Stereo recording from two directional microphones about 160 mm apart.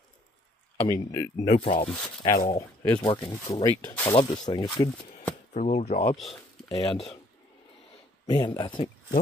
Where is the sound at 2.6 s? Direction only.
10° left (ahead or behind).